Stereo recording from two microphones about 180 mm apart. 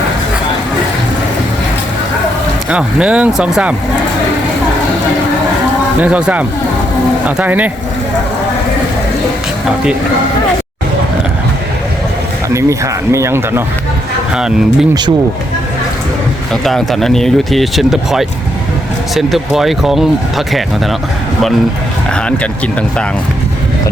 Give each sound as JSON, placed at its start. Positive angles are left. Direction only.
{"t": 2.6, "sound": "speech", "side_deg": -5}
{"t": 6.0, "sound": "speech", "side_deg": -5}
{"t": 12.5, "sound": "speech", "side_deg": -15}
{"t": 14.3, "sound": "speech", "side_deg": -5}
{"t": 16.5, "sound": "speech", "side_deg": 0}
{"t": 22.1, "sound": "speech", "side_deg": 5}